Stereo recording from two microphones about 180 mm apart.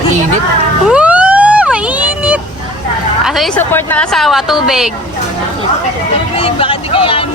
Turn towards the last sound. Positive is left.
turn(degrees=30)  # may be behind; listen again after turning